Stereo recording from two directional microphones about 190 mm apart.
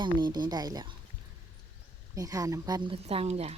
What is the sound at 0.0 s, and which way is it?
Speech, 25° right (ahead or behind).